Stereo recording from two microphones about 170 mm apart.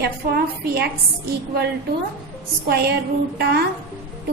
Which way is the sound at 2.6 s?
70° right (ahead or behind).